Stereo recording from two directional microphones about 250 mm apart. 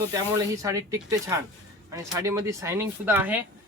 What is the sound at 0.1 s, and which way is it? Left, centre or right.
Speech, centre.